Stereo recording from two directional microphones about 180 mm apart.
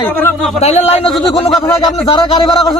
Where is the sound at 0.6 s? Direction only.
35° left (ahead or behind).